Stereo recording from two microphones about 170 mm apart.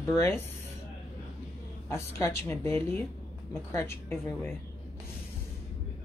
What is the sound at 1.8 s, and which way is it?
Speech, 15° left (ahead or behind).